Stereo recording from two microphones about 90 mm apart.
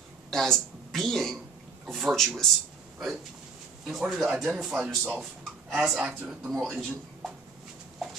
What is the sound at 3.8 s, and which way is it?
Speech, 5° right (ahead or behind).